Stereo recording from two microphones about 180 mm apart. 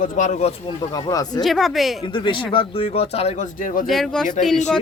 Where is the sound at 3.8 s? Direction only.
Centre (ahead or behind).